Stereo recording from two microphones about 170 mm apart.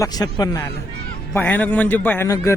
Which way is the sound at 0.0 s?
25° left (ahead or behind).